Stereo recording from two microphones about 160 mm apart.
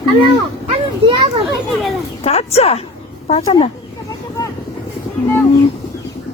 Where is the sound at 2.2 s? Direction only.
40° left (ahead or behind).